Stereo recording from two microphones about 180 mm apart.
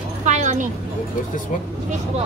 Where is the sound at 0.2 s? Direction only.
40° right (ahead or behind).